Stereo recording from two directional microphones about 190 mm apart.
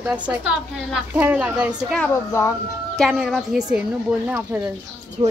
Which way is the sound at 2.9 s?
Centre (ahead or behind).